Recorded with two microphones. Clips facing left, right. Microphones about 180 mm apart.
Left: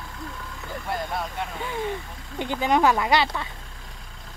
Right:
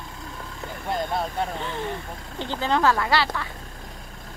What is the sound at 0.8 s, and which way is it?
Speech, 25° right (ahead or behind).